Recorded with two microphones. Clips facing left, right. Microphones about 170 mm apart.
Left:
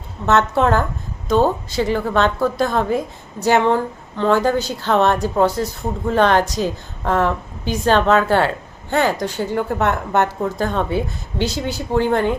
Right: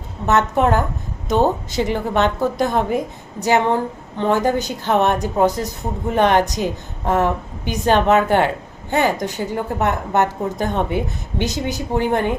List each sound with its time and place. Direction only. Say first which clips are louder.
0.3 s a woman's voice: left 1 dB; 15° right (ahead or behind)